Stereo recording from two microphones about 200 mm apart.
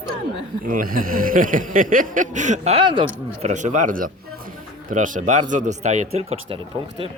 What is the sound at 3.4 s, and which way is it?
Speech, 35° right (ahead or behind).